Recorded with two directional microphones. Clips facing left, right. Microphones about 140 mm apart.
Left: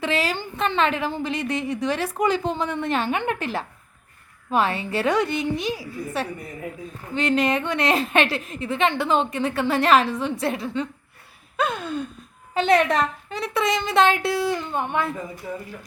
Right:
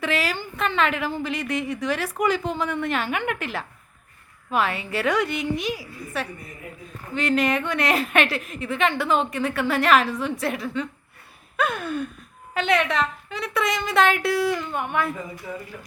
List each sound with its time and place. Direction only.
0.0 s a woman's voice: 25° left (ahead or behind)
12.5 s a woman's voice: 35° left (ahead or behind)